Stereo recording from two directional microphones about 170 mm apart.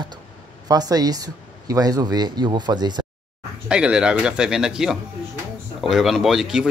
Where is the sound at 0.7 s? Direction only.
20° right (ahead or behind).